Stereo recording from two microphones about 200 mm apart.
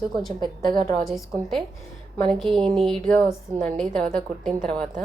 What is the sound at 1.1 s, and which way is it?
Speech, centre (ahead or behind).